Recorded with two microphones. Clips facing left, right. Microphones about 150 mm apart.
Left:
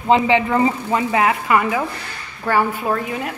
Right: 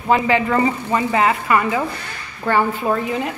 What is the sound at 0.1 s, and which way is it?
Speech, 20° left (ahead or behind).